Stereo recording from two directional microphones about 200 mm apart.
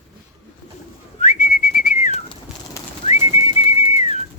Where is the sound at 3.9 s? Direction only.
35° left (ahead or behind).